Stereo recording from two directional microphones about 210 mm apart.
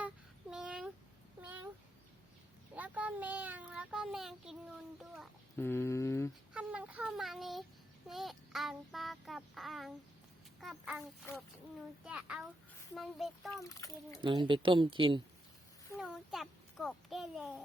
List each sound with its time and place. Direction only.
0.5 s a sound: 5° right (ahead or behind)
2.7 s child singing: 5° right (ahead or behind)
5.5 s speech: 10° left (ahead or behind)
6.5 s child singing: 5° right (ahead or behind)
10.6 s a child's voice: centre (ahead or behind)
11.3 s speech: 10° left (ahead or behind)
12.0 s speech: 5° right (ahead or behind)
13.6 s speech: 15° left (ahead or behind)
14.2 s speech: 25° right (ahead or behind)
16.0 s a child's voice: centre (ahead or behind)